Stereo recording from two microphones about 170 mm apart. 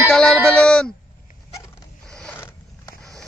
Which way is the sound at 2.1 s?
5° left (ahead or behind).